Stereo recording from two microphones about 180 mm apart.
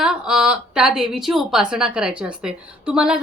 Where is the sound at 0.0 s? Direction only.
5° right (ahead or behind).